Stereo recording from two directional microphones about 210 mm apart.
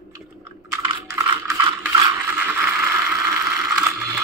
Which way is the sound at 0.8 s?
20° right (ahead or behind).